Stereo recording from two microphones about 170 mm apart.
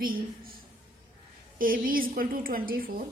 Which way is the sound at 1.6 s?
55° right (ahead or behind).